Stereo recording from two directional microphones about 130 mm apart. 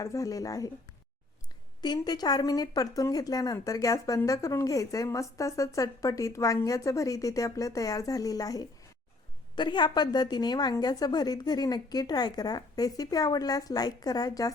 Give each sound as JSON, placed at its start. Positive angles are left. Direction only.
{"t": 0.0, "sound": "a woman's voice", "side_deg": 25}
{"t": 1.8, "sound": "a woman's voice", "side_deg": 30}